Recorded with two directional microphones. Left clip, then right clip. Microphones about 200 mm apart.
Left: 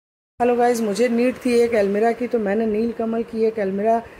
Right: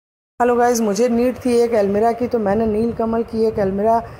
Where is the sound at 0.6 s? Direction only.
5° left (ahead or behind).